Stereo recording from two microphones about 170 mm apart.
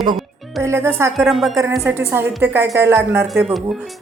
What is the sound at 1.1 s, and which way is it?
Speech, centre (ahead or behind).